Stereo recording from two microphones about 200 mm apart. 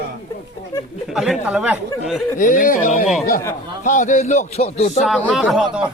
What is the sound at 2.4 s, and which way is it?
Speech, 40° left (ahead or behind).